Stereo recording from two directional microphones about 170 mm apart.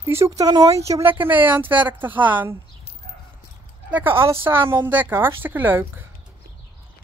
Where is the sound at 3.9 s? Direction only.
10° right (ahead or behind).